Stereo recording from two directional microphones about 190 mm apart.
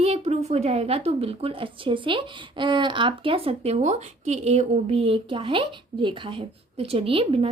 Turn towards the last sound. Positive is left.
turn(degrees=-30)  # may be behind; listen again after turning